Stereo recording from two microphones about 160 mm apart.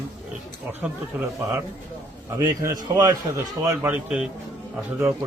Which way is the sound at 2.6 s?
20° right (ahead or behind).